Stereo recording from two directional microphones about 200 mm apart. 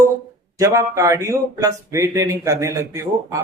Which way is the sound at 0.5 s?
15° right (ahead or behind).